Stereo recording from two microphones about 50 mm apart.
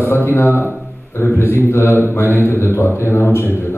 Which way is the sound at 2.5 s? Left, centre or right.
Left.